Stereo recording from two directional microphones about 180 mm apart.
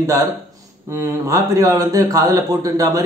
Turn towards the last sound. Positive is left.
turn(degrees=-20)  # may be behind; listen again after turning